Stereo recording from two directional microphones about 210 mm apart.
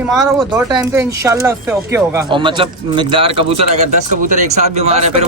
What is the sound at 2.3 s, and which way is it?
Speech, 25° right (ahead or behind).